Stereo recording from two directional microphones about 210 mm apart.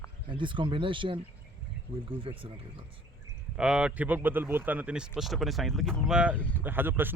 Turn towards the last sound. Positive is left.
turn(degrees=-10)  # may be behind; listen again after turning